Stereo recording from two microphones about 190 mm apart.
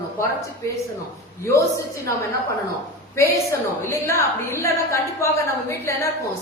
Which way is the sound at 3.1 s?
15° left (ahead or behind).